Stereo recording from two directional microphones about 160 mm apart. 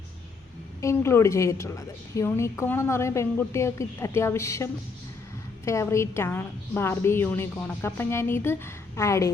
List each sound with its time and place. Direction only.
0.8 s a woman's voice: 15° left (ahead or behind)